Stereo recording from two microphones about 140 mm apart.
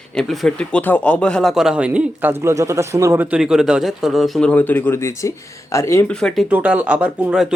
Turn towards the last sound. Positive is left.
turn(degrees=-5)  # may be behind; listen again after turning